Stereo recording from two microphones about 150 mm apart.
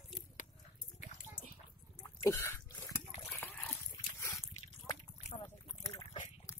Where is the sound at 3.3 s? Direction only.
10° left (ahead or behind).